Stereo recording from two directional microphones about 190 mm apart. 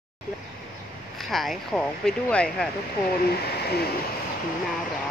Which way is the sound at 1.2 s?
Centre (ahead or behind).